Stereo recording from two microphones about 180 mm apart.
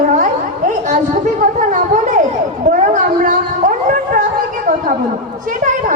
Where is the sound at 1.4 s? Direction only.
45° right (ahead or behind).